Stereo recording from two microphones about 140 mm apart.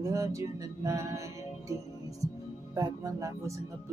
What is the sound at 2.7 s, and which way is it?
Music, 25° right (ahead or behind).